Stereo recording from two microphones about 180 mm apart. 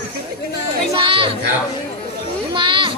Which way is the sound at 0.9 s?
30° right (ahead or behind).